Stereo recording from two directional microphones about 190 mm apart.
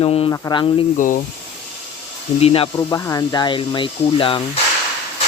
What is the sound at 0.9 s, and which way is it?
Speech, 45° left (ahead or behind).